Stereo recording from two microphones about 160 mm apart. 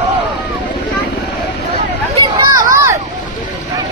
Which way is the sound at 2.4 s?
20° right (ahead or behind).